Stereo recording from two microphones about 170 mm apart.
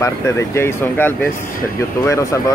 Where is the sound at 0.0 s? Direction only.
15° left (ahead or behind).